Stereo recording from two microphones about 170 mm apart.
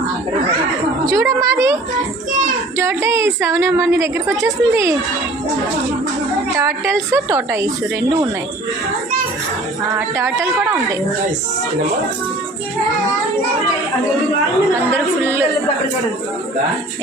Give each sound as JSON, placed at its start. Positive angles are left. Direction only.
{"t": 1.1, "sound": "a woman's voice", "side_deg": -20}
{"t": 2.7, "sound": "child singing", "side_deg": -15}
{"t": 3.4, "sound": "a woman's voice", "side_deg": -15}
{"t": 6.6, "sound": "a woman's voice", "side_deg": -15}
{"t": 9.9, "sound": "a woman's voice", "side_deg": -15}
{"t": 14.9, "sound": "a woman's voice", "side_deg": -15}